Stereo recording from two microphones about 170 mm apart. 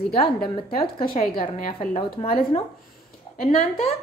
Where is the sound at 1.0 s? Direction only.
55° left (ahead or behind).